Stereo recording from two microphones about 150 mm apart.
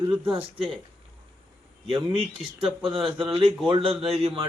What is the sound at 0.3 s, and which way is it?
Speech, 40° right (ahead or behind).